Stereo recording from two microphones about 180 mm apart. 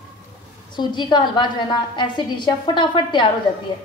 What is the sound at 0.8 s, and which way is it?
A woman's voice, 25° left (ahead or behind).